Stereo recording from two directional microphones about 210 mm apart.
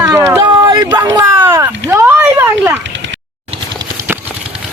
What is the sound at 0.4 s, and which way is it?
Speech, 20° right (ahead or behind).